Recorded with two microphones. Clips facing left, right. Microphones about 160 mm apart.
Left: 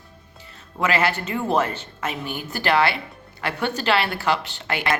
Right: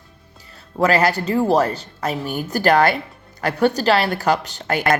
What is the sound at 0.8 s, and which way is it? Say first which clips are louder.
A woman's voice: right 5 dB; 40° right (ahead or behind).